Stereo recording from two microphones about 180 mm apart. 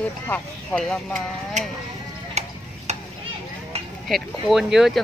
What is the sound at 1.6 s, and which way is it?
Speech, 40° right (ahead or behind).